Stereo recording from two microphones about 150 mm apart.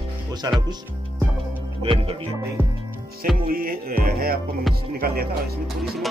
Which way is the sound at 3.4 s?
70° right (ahead or behind).